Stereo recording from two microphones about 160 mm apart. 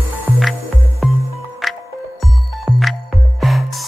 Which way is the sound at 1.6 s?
Centre (ahead or behind).